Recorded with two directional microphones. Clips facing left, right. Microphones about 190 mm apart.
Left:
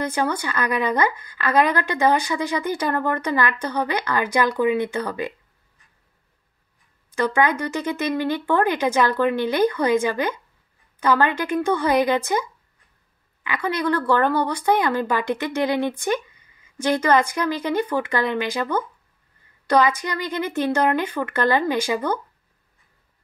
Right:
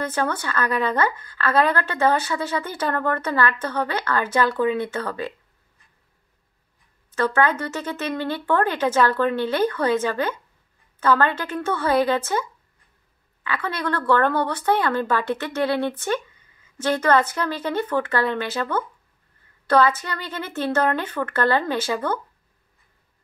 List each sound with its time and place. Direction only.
0.0 s speech: 10° left (ahead or behind)
7.1 s speech: 10° left (ahead or behind)